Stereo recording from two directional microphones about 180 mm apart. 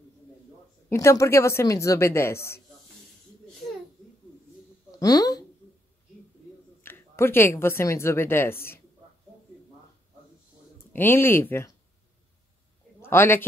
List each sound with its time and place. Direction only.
0.8 s speech: 15° left (ahead or behind)
4.9 s speech: 20° left (ahead or behind)
6.8 s a woman's voice: 10° left (ahead or behind)
10.9 s speech: 10° left (ahead or behind)
13.0 s speech: 15° left (ahead or behind)